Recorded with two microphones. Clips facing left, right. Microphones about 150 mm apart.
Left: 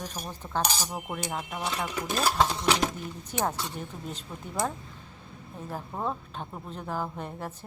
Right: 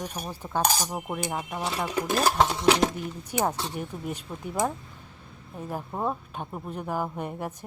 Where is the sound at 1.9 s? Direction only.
45° right (ahead or behind).